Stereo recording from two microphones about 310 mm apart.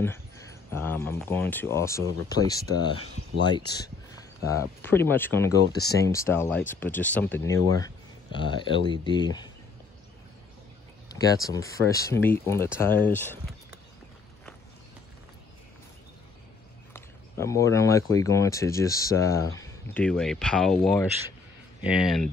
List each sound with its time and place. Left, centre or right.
0.7 s speech: centre
11.1 s speech: centre
16.9 s speech: centre